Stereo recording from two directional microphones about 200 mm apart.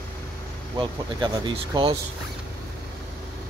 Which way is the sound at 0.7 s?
25° right (ahead or behind).